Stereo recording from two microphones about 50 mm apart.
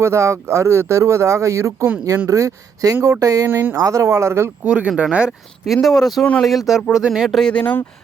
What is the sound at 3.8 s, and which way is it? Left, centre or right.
Speech, right.